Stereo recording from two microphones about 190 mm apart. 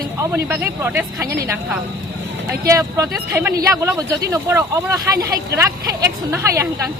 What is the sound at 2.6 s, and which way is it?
Speech, 15° right (ahead or behind).